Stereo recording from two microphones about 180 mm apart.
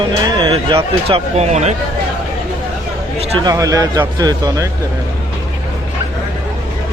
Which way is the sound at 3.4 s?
20° right (ahead or behind).